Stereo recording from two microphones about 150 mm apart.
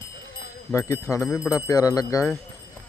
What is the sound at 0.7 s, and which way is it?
Speech, 15° left (ahead or behind).